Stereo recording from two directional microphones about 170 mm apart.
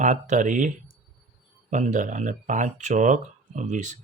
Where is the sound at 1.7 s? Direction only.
45° right (ahead or behind).